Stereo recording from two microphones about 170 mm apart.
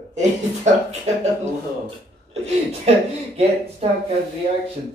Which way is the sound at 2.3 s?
40° right (ahead or behind).